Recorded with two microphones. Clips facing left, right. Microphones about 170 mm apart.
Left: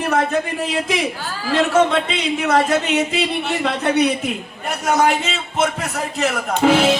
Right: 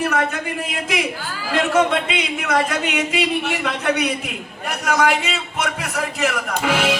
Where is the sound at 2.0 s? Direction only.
30° left (ahead or behind).